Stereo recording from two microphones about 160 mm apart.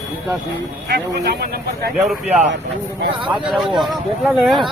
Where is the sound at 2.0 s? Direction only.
5° right (ahead or behind).